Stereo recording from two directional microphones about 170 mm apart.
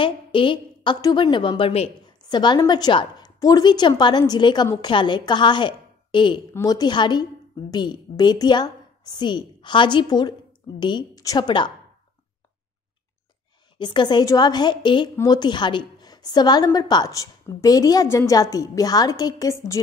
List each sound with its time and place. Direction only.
0.0 s a woman's voice: 30° left (ahead or behind)
13.7 s a woman's voice: 25° left (ahead or behind)